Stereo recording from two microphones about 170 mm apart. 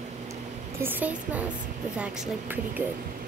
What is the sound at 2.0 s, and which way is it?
Speech, 10° right (ahead or behind).